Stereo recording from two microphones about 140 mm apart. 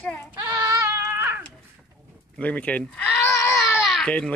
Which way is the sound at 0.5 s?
25° right (ahead or behind).